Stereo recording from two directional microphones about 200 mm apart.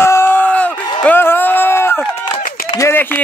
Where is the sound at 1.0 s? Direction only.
10° left (ahead or behind).